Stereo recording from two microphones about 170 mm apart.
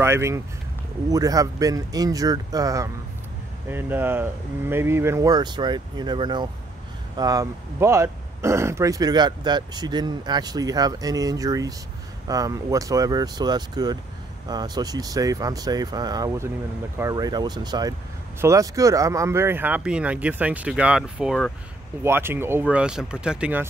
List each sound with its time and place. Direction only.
0.0 s speech: 15° right (ahead or behind)
22.0 s speech: 15° right (ahead or behind)